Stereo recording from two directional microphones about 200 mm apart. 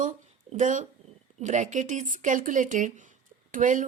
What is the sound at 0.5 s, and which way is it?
A woman's voice, 40° right (ahead or behind).